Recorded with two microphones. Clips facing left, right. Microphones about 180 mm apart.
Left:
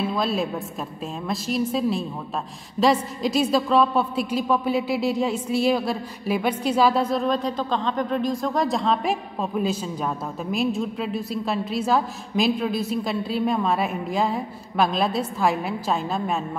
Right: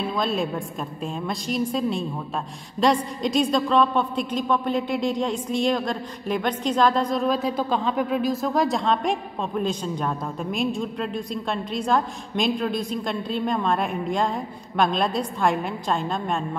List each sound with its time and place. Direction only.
0.0 s a woman's voice: 5° left (ahead or behind)